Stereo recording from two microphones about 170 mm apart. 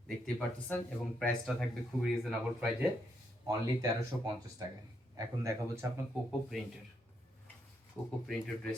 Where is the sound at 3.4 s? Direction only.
20° right (ahead or behind).